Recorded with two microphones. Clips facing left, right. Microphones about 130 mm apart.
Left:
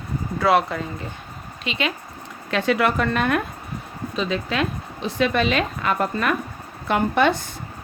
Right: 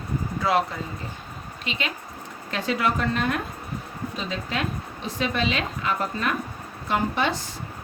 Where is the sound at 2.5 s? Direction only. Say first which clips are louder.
Left 5 dB; 70° left (ahead or behind).